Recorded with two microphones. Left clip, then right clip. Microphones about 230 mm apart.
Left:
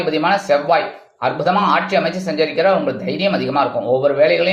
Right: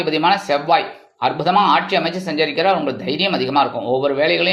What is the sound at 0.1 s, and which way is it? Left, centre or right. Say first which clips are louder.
Speech: left 1 dB; right.